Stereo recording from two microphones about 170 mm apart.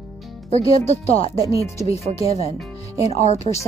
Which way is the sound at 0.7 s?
35° left (ahead or behind).